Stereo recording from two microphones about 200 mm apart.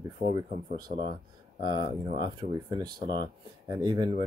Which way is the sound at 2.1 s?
20° right (ahead or behind).